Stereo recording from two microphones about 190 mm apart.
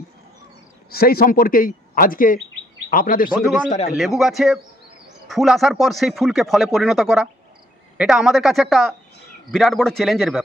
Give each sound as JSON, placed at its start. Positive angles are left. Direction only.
{"t": 0.8, "sound": "speech", "side_deg": 55}
{"t": 3.9, "sound": "speech", "side_deg": 0}